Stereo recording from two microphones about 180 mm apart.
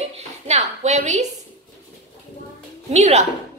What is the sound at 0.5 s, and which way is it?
Speech, 40° right (ahead or behind).